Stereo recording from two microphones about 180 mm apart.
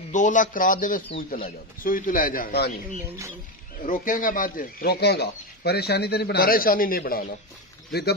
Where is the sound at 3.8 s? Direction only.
50° left (ahead or behind).